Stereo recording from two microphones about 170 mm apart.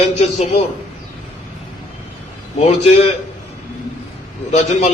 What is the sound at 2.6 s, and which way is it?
Speech, 40° left (ahead or behind).